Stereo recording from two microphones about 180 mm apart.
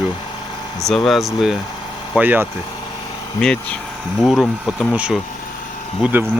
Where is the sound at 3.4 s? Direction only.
5° left (ahead or behind).